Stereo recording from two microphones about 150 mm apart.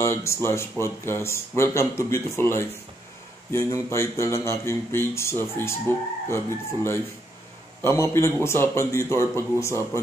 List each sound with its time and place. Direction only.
0.0 s speech: 20° left (ahead or behind)